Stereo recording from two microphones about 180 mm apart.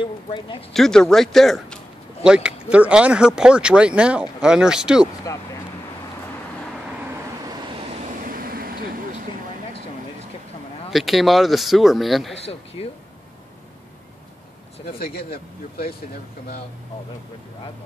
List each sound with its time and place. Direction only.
0.0 s speech: 30° left (ahead or behind)
0.7 s speech: 5° left (ahead or behind)
8.3 s vehicle: 55° right (ahead or behind)
10.9 s speech: centre (ahead or behind)
12.4 s speech: 35° left (ahead or behind)
15.0 s speech: 55° left (ahead or behind)